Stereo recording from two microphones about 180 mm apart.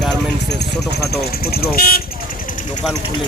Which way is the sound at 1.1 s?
60° left (ahead or behind).